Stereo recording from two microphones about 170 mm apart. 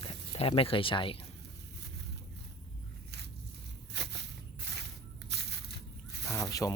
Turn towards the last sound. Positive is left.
turn(degrees=20)  # may be behind; listen again after turning